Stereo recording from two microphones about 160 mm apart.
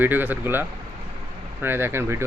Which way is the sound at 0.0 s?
10° right (ahead or behind).